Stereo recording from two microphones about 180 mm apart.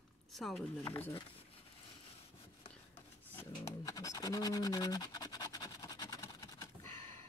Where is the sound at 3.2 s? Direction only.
15° left (ahead or behind).